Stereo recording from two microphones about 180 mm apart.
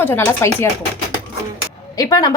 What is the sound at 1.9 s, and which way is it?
Speech, 20° left (ahead or behind).